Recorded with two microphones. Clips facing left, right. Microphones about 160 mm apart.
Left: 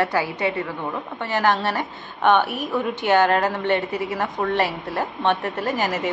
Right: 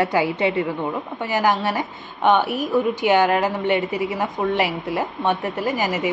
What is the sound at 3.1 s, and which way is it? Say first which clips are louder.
Speech: left 1 dB; 10° right (ahead or behind).